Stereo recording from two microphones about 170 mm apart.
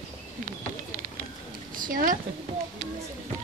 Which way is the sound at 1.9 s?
55° right (ahead or behind).